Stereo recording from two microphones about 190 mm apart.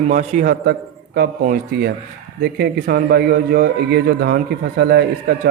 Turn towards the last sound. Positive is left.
turn(degrees=-60)  # may be behind; listen again after turning